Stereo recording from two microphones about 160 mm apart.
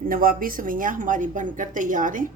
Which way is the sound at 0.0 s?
60° right (ahead or behind).